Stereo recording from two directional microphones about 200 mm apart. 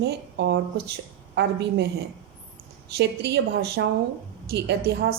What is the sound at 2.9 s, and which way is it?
A woman's voice, 55° right (ahead or behind).